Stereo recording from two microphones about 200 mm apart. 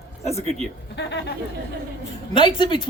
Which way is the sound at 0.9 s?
60° left (ahead or behind).